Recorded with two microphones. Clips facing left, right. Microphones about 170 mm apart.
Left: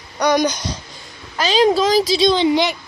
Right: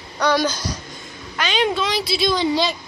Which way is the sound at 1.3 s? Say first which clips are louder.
Left 6 dB; 35° left (ahead or behind).